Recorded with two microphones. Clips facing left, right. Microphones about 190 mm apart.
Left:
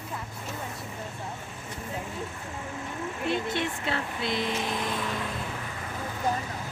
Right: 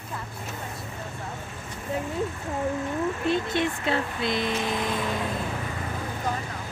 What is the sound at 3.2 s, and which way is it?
Vehicle, 15° left (ahead or behind).